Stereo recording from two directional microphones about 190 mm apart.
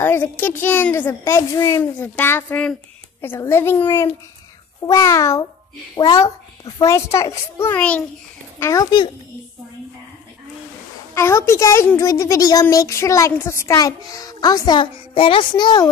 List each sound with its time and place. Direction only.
0.0 s a child's voice: 10° left (ahead or behind)
4.8 s a child's voice: 15° left (ahead or behind)
11.1 s a child's voice: 15° left (ahead or behind)